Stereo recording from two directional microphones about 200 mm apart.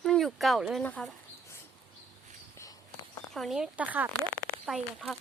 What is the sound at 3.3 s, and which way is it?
Speech, centre (ahead or behind).